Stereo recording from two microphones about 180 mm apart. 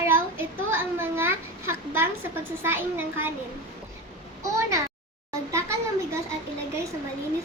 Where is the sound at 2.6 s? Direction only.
10° right (ahead or behind).